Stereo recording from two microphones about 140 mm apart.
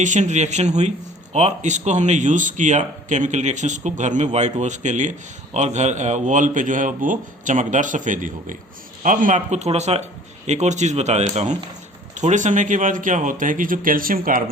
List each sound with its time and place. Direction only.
0.0 s a man's voice: 60° right (ahead or behind); by 14.4 s 85° right